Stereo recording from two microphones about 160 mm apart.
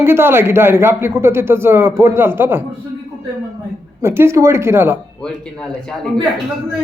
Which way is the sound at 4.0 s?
15° right (ahead or behind).